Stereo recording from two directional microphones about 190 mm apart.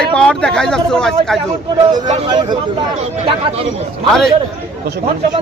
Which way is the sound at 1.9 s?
20° right (ahead or behind).